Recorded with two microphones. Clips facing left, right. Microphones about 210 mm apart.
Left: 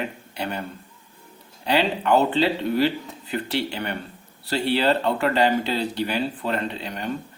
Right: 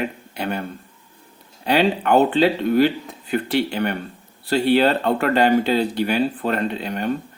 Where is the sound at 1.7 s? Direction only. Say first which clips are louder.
Right 3 dB; 50° right (ahead or behind).